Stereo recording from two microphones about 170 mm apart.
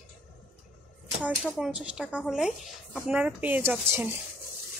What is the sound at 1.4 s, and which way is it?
Speech, centre (ahead or behind).